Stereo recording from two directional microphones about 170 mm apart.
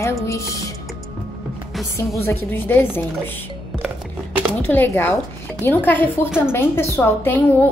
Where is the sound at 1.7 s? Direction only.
Centre (ahead or behind).